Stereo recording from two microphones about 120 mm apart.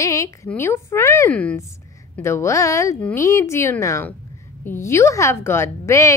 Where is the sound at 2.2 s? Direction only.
25° left (ahead or behind).